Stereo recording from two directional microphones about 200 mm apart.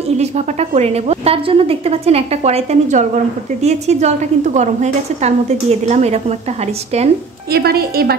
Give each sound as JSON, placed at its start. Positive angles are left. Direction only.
{"t": 0.2, "sound": "a woman's voice", "side_deg": -30}
{"t": 7.5, "sound": "a woman's voice", "side_deg": -50}